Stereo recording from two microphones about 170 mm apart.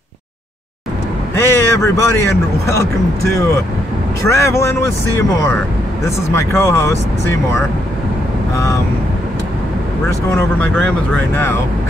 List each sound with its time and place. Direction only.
1.3 s speech: 15° left (ahead or behind)
6.0 s speech: 15° left (ahead or behind)
8.5 s speech: 20° left (ahead or behind)
10.0 s speech: 15° left (ahead or behind)